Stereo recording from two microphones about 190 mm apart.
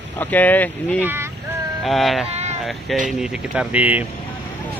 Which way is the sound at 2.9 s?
Centre (ahead or behind).